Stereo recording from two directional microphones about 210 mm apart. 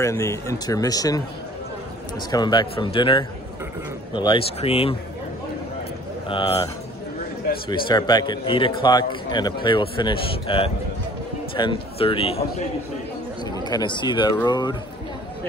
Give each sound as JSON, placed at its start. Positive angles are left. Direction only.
{"t": 0.0, "sound": "a man's voice", "side_deg": 15}
{"t": 2.3, "sound": "a man's voice", "side_deg": 20}
{"t": 6.2, "sound": "a man's voice", "side_deg": 25}
{"t": 13.7, "sound": "a man's voice", "side_deg": 20}